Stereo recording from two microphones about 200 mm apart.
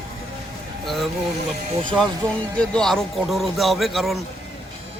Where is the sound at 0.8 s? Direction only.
Centre (ahead or behind).